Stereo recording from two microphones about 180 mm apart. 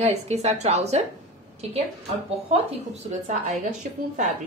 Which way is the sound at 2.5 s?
40° right (ahead or behind).